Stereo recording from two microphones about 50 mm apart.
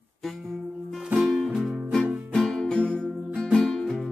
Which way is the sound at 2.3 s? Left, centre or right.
Centre.